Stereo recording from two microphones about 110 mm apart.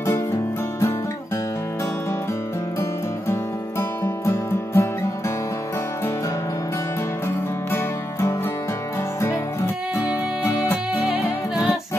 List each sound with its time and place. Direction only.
0.0 s music: 25° left (ahead or behind)
4.0 s music: 25° left (ahead or behind)
7.2 s music: 25° left (ahead or behind)